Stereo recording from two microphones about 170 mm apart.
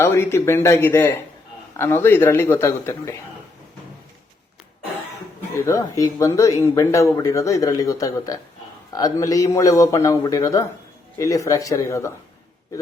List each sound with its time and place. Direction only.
0.0 s a man's voice: 15° left (ahead or behind)
5.6 s speech: 20° left (ahead or behind)